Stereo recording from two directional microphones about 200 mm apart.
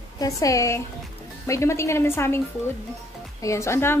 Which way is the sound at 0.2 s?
15° left (ahead or behind).